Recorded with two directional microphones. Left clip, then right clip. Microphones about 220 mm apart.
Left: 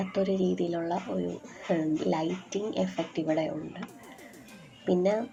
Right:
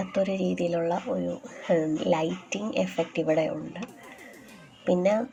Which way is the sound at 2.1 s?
60° right (ahead or behind).